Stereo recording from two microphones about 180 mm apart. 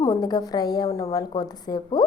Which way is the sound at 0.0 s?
20° left (ahead or behind).